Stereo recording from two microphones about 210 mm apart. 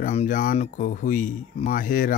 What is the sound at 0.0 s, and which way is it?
Speech, 35° left (ahead or behind).